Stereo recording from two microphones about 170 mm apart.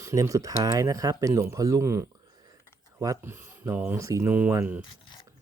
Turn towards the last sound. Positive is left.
turn(degrees=-15)  # may be behind; listen again after turning